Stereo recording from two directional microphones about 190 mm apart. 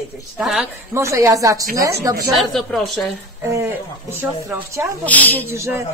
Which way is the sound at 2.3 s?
Centre (ahead or behind).